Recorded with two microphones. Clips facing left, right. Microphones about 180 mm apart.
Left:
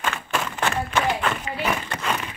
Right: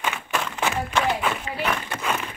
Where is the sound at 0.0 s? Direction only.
Centre (ahead or behind).